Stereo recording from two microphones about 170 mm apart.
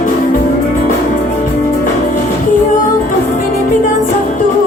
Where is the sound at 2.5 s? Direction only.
50° left (ahead or behind).